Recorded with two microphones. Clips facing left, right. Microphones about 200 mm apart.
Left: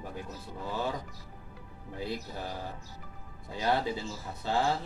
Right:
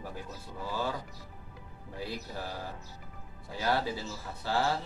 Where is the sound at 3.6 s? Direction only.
20° left (ahead or behind).